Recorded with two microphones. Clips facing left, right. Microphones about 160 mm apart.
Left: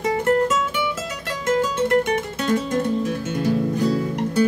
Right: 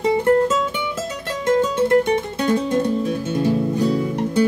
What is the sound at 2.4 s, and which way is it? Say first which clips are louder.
Music: right 2 dB; 20° right (ahead or behind).